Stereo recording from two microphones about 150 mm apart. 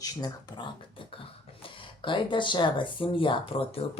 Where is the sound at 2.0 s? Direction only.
35° left (ahead or behind).